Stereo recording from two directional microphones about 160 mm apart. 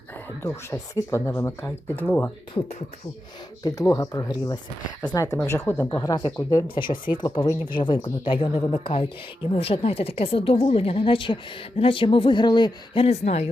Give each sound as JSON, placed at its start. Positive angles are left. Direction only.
{"t": 0.4, "sound": "speech", "side_deg": 20}